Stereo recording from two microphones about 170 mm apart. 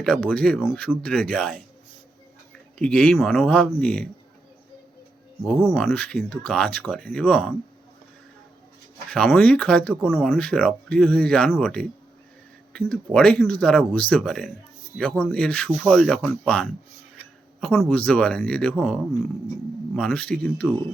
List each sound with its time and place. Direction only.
0.0 s speech: 5° left (ahead or behind)
2.7 s speech: 5° left (ahead or behind)
5.4 s speech: centre (ahead or behind)
9.0 s speech: 5° left (ahead or behind)